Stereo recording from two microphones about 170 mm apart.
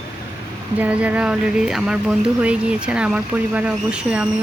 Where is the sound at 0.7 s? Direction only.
10° right (ahead or behind).